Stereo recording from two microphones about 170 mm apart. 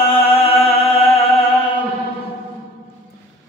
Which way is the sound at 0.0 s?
35° left (ahead or behind).